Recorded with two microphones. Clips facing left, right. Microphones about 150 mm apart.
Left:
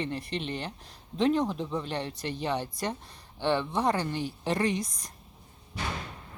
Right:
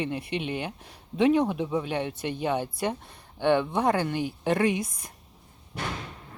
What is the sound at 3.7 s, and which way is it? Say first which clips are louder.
Speech: right 3 dB; 50° right (ahead or behind).